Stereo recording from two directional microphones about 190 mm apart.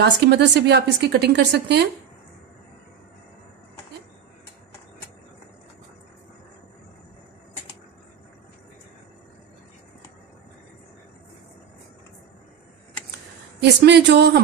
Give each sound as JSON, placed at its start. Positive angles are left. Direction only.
{"t": 0.0, "sound": "a woman's voice", "side_deg": -65}
{"t": 13.6, "sound": "a woman's voice", "side_deg": -65}